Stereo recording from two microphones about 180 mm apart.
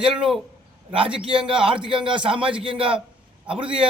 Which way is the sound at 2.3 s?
5° right (ahead or behind).